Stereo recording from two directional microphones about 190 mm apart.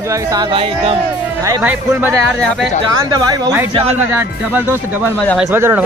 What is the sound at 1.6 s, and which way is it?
Speech, 10° right (ahead or behind).